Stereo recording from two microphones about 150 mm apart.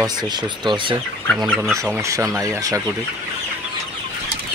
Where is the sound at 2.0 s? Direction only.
20° right (ahead or behind).